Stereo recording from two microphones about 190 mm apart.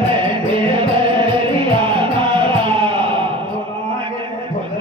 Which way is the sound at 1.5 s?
30° right (ahead or behind).